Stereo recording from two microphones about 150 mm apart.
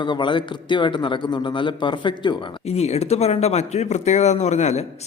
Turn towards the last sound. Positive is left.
turn(degrees=50)  # may be behind; listen again after turning